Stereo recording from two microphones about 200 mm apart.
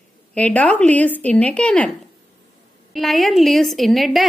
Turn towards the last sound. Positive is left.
turn(degrees=0)  # may be behind; listen again after turning